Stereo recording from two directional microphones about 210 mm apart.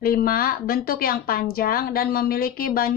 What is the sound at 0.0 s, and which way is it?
A woman's voice, 45° left (ahead or behind).